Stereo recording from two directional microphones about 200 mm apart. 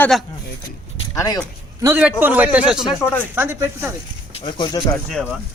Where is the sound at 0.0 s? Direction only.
Centre (ahead or behind).